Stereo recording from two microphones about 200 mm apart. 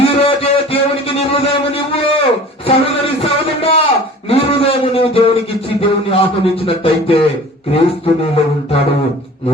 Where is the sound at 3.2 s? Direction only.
30° left (ahead or behind).